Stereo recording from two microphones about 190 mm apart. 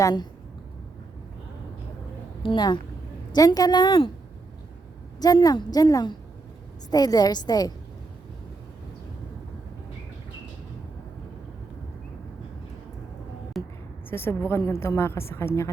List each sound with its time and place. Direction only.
0.0 s a woman's voice: 20° left (ahead or behind)
2.4 s a woman's voice: 25° left (ahead or behind)
5.2 s a woman's voice: 20° left (ahead or behind)
13.5 s a sound: centre (ahead or behind)
14.1 s a woman's voice: 10° left (ahead or behind)